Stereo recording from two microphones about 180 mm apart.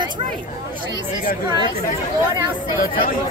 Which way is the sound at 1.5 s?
25° right (ahead or behind).